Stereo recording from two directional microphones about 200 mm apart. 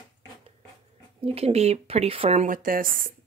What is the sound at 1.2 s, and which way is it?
Speech, 30° right (ahead or behind).